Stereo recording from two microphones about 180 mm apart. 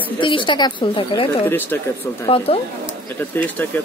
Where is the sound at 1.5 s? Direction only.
10° left (ahead or behind).